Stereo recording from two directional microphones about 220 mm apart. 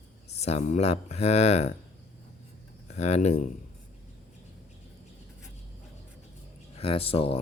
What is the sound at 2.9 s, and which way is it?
Speech, 30° left (ahead or behind).